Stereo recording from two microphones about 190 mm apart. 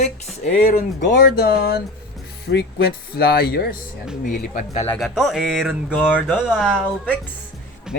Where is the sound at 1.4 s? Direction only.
60° left (ahead or behind).